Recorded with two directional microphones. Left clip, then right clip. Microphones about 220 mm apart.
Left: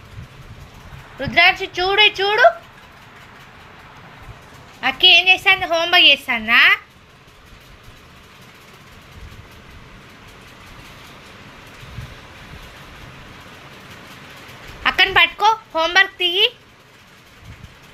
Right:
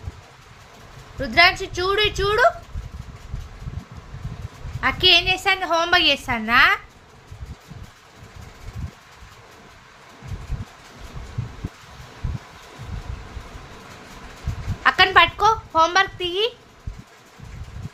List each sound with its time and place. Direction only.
1.2 s a woman's voice: 25° right (ahead or behind)
4.8 s a woman's voice: 20° right (ahead or behind)
14.8 s a sound: 10° right (ahead or behind)